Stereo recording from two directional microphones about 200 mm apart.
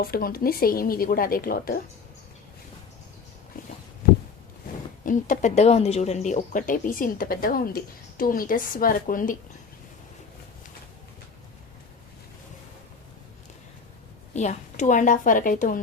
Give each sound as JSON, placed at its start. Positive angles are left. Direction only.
{"t": 0.0, "sound": "speech", "side_deg": 45}
{"t": 5.0, "sound": "speech", "side_deg": 40}
{"t": 14.3, "sound": "a woman's voice", "side_deg": 35}